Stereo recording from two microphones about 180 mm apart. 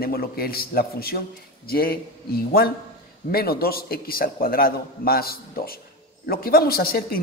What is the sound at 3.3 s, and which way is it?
A man's voice, 55° left (ahead or behind).